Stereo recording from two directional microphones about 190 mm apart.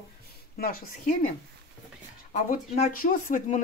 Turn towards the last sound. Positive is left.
turn(degrees=40)  # may be behind; listen again after turning